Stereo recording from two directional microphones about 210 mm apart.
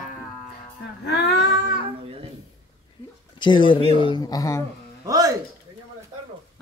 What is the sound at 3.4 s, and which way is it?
A man's voice, 20° left (ahead or behind).